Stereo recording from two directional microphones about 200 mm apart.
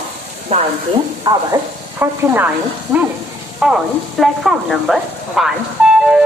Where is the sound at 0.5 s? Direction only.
35° right (ahead or behind).